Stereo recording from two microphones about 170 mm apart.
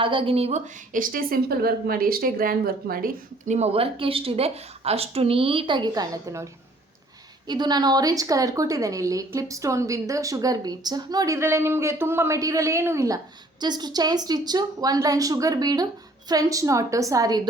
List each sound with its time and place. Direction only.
0.0 s a woman's voice: 30° right (ahead or behind)
0.9 s a woman's voice: 55° right (ahead or behind); by 17.5 s 25° right (ahead or behind)